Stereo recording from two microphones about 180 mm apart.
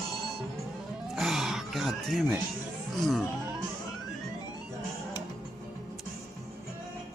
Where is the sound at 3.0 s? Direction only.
Centre (ahead or behind).